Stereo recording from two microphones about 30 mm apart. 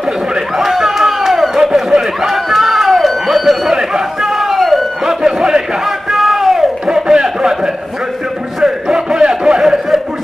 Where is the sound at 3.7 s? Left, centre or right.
Centre.